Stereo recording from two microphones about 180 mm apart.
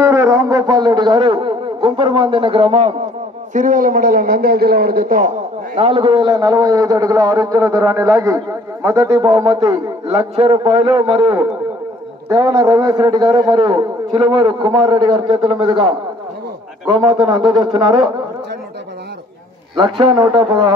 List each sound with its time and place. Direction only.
0.0 s a sound: 20° right (ahead or behind)
3.5 s a man's voice: 45° right (ahead or behind)
5.8 s a man's voice: 25° right (ahead or behind)
10.0 s a man's voice: 30° right (ahead or behind)
16.9 s a man's voice: 30° right (ahead or behind)
19.8 s a man's voice: 25° right (ahead or behind)